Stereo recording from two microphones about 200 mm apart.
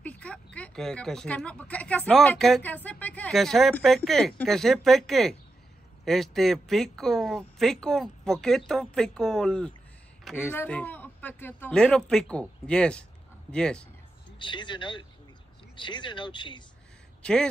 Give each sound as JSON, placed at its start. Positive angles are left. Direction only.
{"t": 0.0, "sound": "a sound", "side_deg": 5}
{"t": 0.6, "sound": "speech", "side_deg": 5}
{"t": 14.4, "sound": "speech", "side_deg": 25}
{"t": 17.2, "sound": "speech", "side_deg": 5}